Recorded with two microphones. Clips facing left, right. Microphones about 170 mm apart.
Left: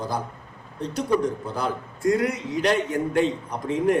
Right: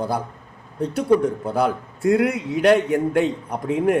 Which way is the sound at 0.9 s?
60° right (ahead or behind).